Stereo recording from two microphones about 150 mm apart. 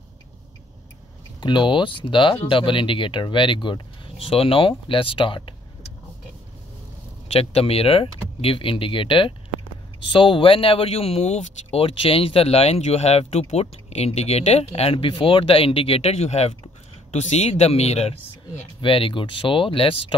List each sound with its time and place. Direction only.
1.4 s speech: 30° left (ahead or behind)
7.3 s speech: 40° left (ahead or behind)